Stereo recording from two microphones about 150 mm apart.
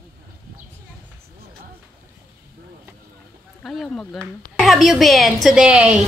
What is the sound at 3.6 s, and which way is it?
A woman's voice, centre (ahead or behind).